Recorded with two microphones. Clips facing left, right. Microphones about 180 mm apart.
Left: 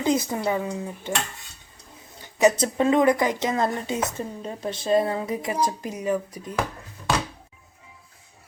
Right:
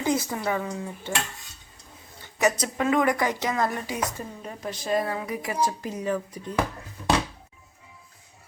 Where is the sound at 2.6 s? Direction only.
30° left (ahead or behind); by 6.5 s 15° left (ahead or behind).